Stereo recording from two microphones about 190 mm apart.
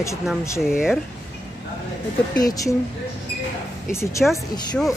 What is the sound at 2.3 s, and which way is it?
Speech, 20° left (ahead or behind).